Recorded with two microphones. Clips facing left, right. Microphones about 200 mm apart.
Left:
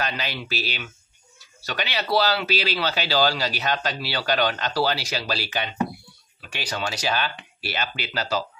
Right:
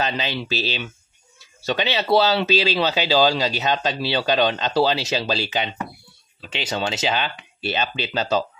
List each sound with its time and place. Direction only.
0.0 s speech: 25° right (ahead or behind)